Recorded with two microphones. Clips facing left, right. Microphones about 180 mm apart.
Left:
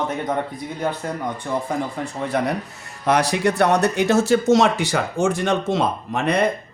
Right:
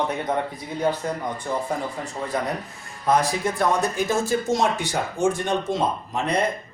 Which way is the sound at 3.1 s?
75° left (ahead or behind).